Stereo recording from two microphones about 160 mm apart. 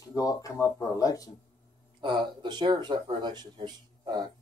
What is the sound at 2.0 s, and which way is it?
Speech, 30° right (ahead or behind).